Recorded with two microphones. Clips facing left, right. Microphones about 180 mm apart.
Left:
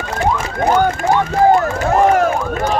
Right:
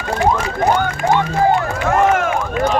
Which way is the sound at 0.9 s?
40° left (ahead or behind).